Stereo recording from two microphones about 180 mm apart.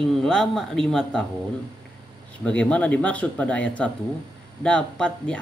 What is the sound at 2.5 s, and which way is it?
Speech, 5° left (ahead or behind).